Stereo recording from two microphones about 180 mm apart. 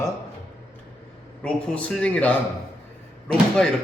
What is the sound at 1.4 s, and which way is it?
A man's voice, 5° left (ahead or behind).